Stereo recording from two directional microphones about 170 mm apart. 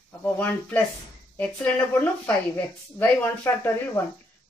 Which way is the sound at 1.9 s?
10° left (ahead or behind).